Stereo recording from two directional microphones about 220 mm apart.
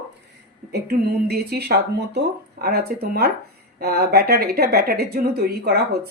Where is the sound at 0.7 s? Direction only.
45° right (ahead or behind).